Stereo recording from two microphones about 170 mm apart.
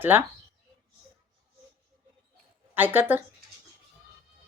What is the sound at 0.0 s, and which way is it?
Female singing, 10° right (ahead or behind).